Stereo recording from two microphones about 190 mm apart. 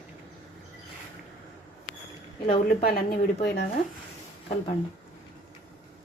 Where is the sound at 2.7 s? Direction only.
50° left (ahead or behind).